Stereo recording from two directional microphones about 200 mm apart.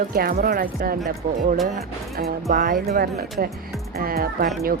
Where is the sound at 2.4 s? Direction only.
45° right (ahead or behind).